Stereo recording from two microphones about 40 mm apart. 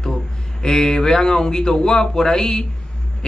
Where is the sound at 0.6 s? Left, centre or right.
Centre.